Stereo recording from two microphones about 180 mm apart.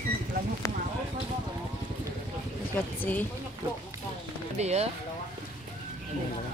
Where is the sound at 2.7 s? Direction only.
10° left (ahead or behind).